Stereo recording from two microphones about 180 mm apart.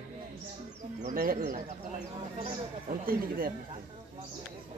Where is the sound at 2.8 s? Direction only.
50° right (ahead or behind).